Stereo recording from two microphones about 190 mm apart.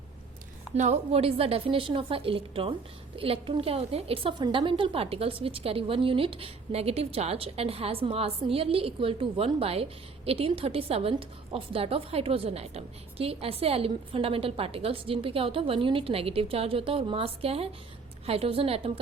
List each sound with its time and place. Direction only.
0.8 s a woman's voice: 35° right (ahead or behind)